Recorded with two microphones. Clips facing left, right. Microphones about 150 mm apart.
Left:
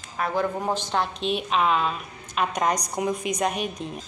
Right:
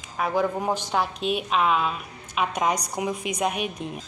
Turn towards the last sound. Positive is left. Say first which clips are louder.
# even
turn(degrees=-5)  # may be behind; listen again after turning